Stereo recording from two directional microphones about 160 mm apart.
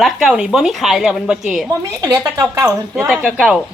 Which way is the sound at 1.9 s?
20° right (ahead or behind).